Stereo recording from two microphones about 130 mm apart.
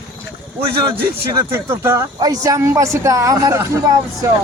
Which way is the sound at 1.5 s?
20° right (ahead or behind).